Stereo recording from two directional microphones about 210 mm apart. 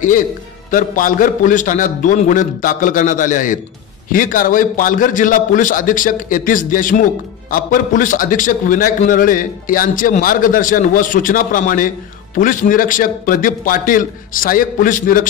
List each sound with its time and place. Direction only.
0.7 s a man's voice: 40° left (ahead or behind)